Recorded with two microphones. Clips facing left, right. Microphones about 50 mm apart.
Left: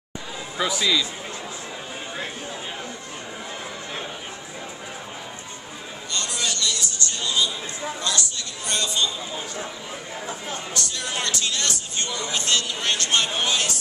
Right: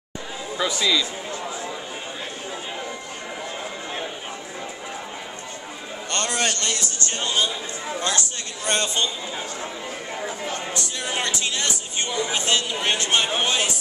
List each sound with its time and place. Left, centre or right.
0.6 s a man's voice: centre
6.1 s a sound: right
8.0 s speech: right
11.0 s speech: centre